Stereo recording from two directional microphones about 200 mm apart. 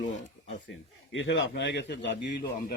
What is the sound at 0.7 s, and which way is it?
A man's voice, 75° left (ahead or behind).